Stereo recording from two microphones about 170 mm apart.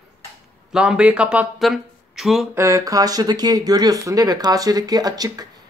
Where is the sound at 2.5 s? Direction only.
15° right (ahead or behind).